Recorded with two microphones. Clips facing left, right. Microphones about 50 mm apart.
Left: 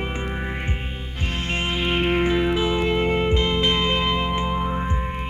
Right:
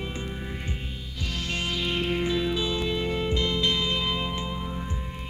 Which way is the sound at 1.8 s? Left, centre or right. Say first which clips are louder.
Left 7 dB; left.